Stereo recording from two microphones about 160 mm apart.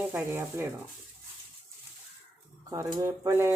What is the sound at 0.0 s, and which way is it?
Speech, 10° right (ahead or behind).